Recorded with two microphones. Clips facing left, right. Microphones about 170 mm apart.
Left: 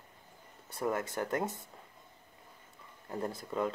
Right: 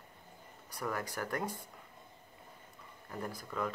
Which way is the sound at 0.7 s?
25° left (ahead or behind).